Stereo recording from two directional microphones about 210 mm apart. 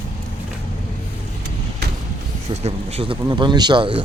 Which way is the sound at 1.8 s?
50° right (ahead or behind).